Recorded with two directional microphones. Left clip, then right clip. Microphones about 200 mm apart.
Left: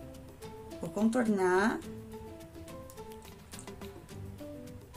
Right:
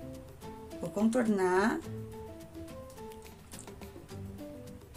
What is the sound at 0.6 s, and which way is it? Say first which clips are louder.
Speech: right 1 dB; 5° right (ahead or behind).